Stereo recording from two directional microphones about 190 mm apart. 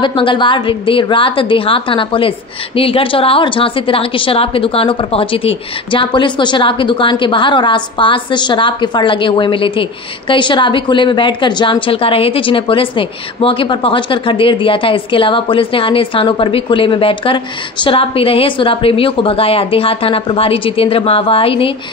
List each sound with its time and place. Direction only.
0.0 s a woman's voice: 25° left (ahead or behind)